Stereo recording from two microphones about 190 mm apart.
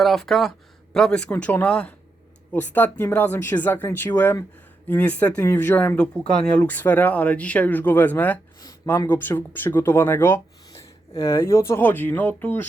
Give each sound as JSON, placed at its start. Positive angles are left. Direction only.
{"t": 0.0, "sound": "speech", "side_deg": 0}